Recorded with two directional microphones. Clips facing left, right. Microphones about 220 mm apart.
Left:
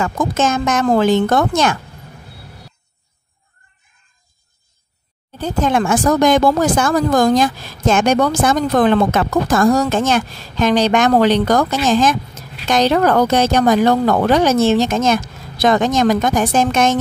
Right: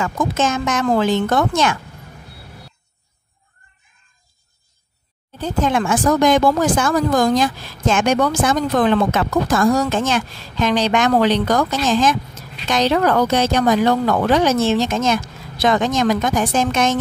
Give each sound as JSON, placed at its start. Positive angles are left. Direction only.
{"t": 0.0, "sound": "speech", "side_deg": 45}
{"t": 5.7, "sound": "speech", "side_deg": 40}